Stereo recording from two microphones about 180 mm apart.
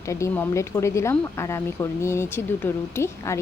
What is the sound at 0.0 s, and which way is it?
Speech, 15° left (ahead or behind).